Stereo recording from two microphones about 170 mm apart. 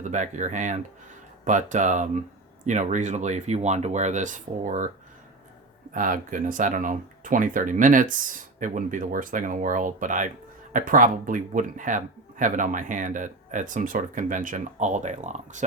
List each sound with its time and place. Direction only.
0.0 s speech: 45° right (ahead or behind)
5.9 s speech: 50° right (ahead or behind)